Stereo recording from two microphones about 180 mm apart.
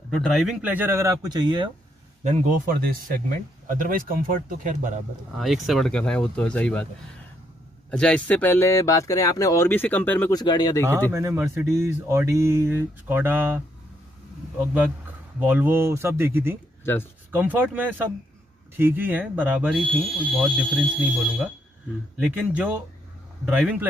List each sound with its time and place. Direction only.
0.1 s speech: centre (ahead or behind); by 1.7 s 25° right (ahead or behind)
2.2 s speech: 45° right (ahead or behind)
5.4 s speech: centre (ahead or behind)
7.9 s speech: 5° left (ahead or behind)
10.3 s speech: 25° left (ahead or behind)
11.1 s speech: 15° right (ahead or behind)
14.6 s speech: 10° right (ahead or behind)
16.8 s speech: 10° left (ahead or behind)
17.3 s speech: 10° right (ahead or behind)
22.2 s speech: 5° right (ahead or behind)